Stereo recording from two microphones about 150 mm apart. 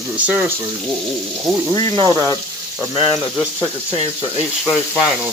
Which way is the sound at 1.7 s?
25° left (ahead or behind).